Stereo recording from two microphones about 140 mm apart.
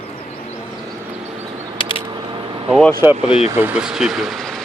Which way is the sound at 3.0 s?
15° right (ahead or behind).